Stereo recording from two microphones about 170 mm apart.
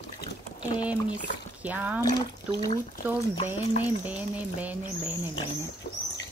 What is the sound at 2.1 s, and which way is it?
Speech, 20° left (ahead or behind).